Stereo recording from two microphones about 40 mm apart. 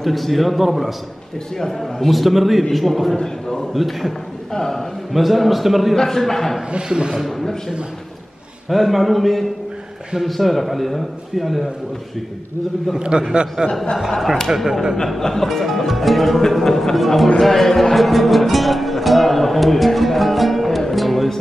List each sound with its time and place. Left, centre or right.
0.0 s music: centre
1.6 s music: centre
4.5 s a man's voice: centre
5.1 s music: centre
5.9 s a man's voice: centre
6.7 s a man's voice: right
7.2 s music: centre
8.6 s music: centre
12.9 s a man's voice: right
14.7 s speech: centre
15.0 s music: centre
17.4 s speech: centre